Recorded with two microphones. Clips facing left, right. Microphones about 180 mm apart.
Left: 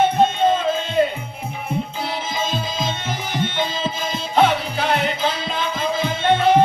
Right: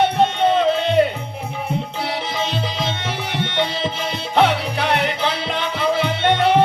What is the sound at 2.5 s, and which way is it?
Music, 70° right (ahead or behind).